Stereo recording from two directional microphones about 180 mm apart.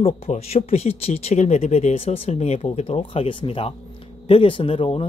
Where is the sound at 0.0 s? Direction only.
35° left (ahead or behind).